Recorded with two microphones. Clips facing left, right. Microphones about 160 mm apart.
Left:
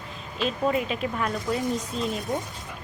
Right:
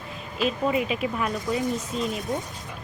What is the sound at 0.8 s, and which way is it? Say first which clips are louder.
Speech: right 1 dB; 10° right (ahead or behind).